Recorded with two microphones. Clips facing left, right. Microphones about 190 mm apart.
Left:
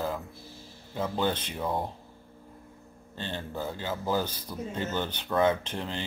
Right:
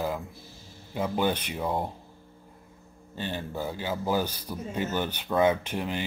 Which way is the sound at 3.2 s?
10° right (ahead or behind).